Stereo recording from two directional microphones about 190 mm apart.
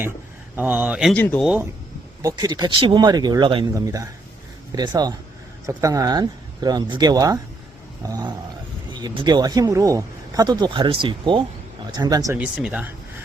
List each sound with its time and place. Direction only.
0.5 s speech: 10° right (ahead or behind)
1.1 s speech: 10° left (ahead or behind)
2.2 s speech: 20° right (ahead or behind)
12.4 s speech: 5° right (ahead or behind)